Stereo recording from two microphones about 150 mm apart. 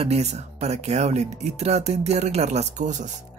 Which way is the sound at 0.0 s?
45° right (ahead or behind).